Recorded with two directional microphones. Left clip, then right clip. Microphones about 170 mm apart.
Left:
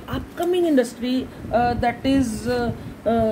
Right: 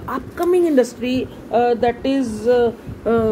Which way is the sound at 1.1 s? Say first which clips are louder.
Right 3 dB; centre (ahead or behind).